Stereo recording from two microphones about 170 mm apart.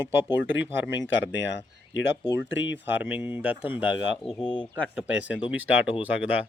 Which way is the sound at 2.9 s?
10° right (ahead or behind).